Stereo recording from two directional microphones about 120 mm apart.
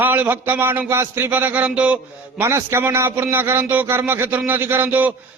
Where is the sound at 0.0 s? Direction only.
15° right (ahead or behind).